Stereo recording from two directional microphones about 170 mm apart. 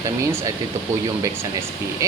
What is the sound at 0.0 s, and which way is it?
Speech, 20° right (ahead or behind).